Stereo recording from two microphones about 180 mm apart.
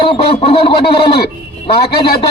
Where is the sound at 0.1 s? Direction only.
35° left (ahead or behind).